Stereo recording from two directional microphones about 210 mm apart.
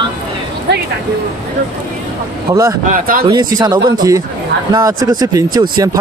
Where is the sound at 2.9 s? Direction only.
40° right (ahead or behind).